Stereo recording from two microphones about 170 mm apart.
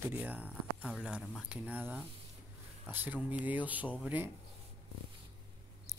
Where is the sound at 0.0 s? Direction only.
10° right (ahead or behind).